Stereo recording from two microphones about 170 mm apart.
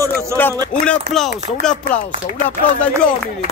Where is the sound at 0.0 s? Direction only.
15° right (ahead or behind).